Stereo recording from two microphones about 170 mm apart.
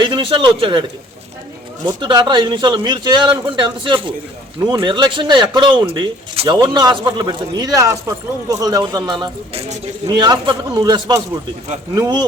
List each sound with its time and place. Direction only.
0.0 s speech: 30° right (ahead or behind)
2.0 s speech: 25° right (ahead or behind)